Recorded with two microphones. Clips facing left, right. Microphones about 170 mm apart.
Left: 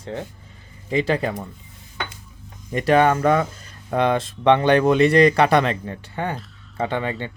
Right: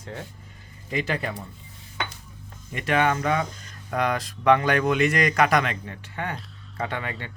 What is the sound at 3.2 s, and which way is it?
Speech, 50° left (ahead or behind).